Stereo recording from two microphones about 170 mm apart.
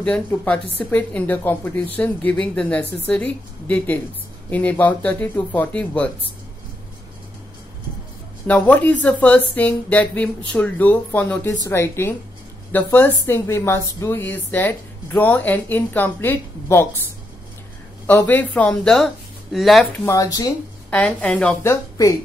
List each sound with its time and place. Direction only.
0.0 s a woman's voice: 5° left (ahead or behind)
8.5 s a woman's voice: 10° left (ahead or behind)
18.0 s a woman's voice: 10° left (ahead or behind)
20.1 s speech: 20° left (ahead or behind)
20.9 s a woman's voice: 10° left (ahead or behind)